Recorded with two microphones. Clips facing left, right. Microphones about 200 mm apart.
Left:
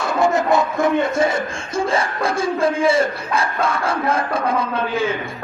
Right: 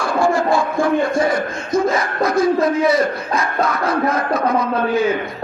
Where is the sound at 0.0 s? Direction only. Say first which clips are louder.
Right 1 dB; 20° left (ahead or behind).